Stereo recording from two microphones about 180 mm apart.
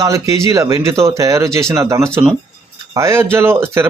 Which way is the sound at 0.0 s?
15° right (ahead or behind).